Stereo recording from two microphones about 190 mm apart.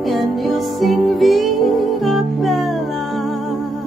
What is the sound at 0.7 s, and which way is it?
Music, centre (ahead or behind).